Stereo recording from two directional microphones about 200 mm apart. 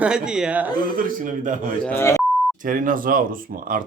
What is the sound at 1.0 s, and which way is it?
Speech, 40° right (ahead or behind).